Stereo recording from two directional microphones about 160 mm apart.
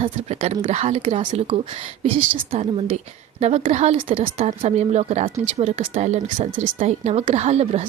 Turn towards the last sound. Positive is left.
turn(degrees=-40)  # may be behind; listen again after turning